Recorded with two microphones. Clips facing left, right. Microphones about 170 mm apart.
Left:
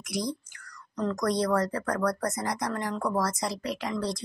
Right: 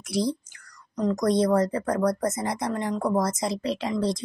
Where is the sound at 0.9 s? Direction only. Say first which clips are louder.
Right 5 dB; 20° right (ahead or behind).